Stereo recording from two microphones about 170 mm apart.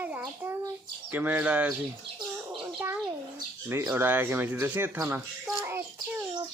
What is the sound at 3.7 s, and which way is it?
Speech, 15° right (ahead or behind).